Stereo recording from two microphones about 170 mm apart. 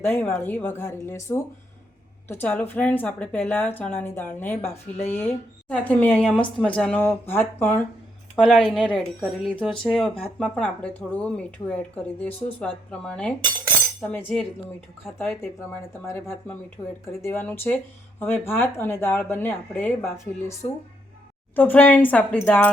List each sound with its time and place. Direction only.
0.0 s speech: 15° left (ahead or behind)
21.5 s speech: 10° left (ahead or behind)